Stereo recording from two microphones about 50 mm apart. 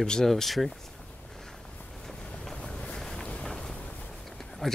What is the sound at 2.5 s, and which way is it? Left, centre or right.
Vehicle, centre.